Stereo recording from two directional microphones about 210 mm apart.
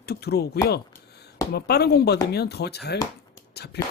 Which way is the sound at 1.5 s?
50° left (ahead or behind).